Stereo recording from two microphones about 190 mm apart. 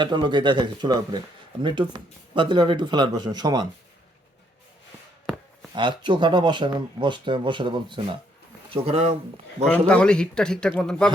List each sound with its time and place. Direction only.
0.0 s speech: 25° right (ahead or behind)
5.7 s speech: 25° right (ahead or behind)
9.6 s a man's voice: 5° left (ahead or behind)